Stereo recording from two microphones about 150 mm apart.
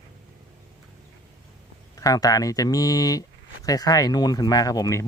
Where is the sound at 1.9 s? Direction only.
25° left (ahead or behind).